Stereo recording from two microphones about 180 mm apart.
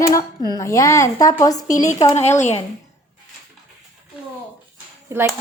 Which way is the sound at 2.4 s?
40° left (ahead or behind).